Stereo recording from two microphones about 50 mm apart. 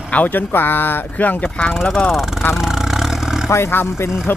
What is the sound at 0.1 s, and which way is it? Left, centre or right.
Speech, left.